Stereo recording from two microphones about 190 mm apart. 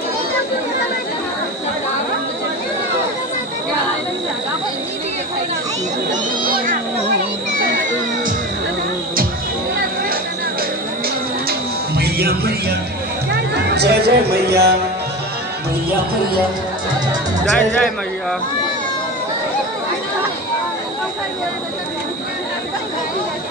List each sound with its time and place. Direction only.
6.4 s a sound: 50° right (ahead or behind)
11.4 s music: 55° right (ahead or behind)
17.5 s speech: 5° left (ahead or behind)